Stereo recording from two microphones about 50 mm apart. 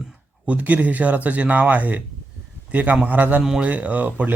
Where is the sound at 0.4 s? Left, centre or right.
Right.